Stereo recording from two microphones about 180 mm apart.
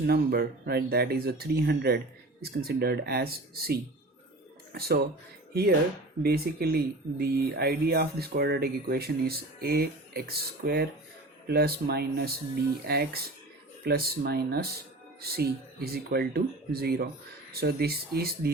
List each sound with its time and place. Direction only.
0.0 s speech: 60° right (ahead or behind)
6.2 s speech: 60° right (ahead or behind)